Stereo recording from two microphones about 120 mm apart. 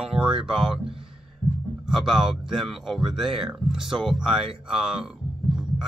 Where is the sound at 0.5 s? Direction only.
5° right (ahead or behind).